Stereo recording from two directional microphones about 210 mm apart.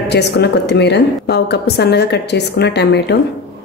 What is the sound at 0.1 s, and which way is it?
A woman's voice, 55° left (ahead or behind).